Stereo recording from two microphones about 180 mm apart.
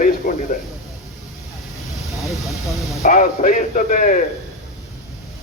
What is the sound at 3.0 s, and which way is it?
A man's voice, 45° left (ahead or behind).